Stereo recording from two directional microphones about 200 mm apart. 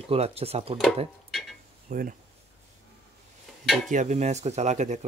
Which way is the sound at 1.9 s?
45° right (ahead or behind).